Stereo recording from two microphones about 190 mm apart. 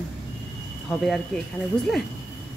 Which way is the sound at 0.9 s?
Centre (ahead or behind).